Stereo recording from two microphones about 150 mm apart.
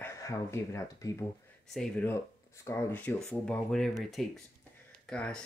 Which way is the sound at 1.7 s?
5° left (ahead or behind).